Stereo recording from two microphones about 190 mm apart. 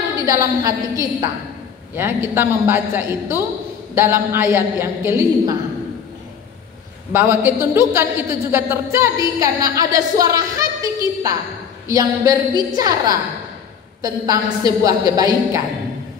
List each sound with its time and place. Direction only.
0.2 s a woman's voice: 15° right (ahead or behind)
7.1 s a woman's voice: 10° right (ahead or behind)